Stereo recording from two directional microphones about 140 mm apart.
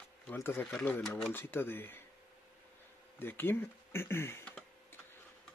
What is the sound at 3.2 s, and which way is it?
Speech, 15° left (ahead or behind).